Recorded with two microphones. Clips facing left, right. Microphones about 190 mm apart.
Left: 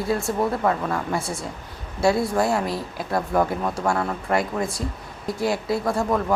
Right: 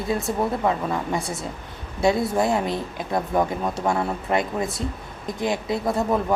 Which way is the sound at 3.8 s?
15° right (ahead or behind).